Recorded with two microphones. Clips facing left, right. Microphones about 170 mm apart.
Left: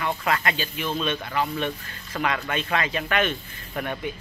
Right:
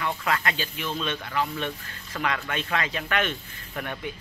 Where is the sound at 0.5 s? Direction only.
10° left (ahead or behind).